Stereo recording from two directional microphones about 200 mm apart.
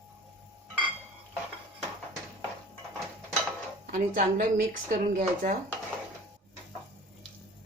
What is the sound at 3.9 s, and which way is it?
A woman's voice, 40° right (ahead or behind).